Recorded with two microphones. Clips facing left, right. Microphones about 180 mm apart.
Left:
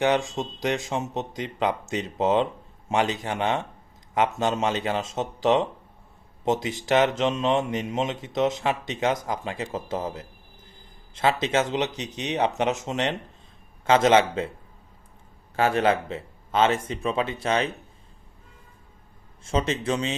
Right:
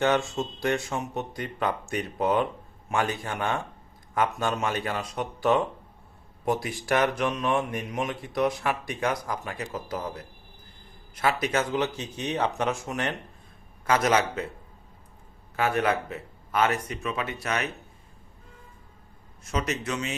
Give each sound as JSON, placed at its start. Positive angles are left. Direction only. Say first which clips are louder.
{"t": 0.0, "sound": "speech", "louder": "left 1 dB", "side_deg": 15}
{"t": 15.5, "sound": "speech", "louder": "left 3 dB", "side_deg": 30}
{"t": 19.5, "sound": "speech", "louder": "left 4 dB", "side_deg": 30}